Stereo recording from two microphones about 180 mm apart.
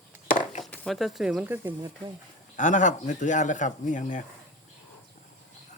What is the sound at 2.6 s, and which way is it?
Speech, 45° left (ahead or behind).